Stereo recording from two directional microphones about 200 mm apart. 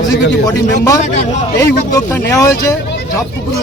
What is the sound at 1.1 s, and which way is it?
Speech, 35° left (ahead or behind).